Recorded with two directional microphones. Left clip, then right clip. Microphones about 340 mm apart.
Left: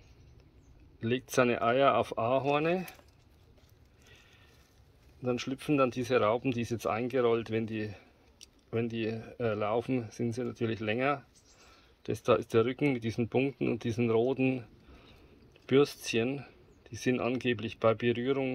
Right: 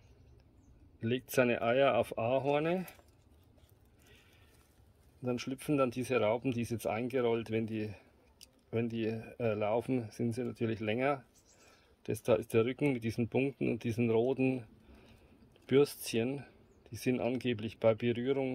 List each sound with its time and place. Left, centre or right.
1.0 s speech: centre
5.2 s speech: centre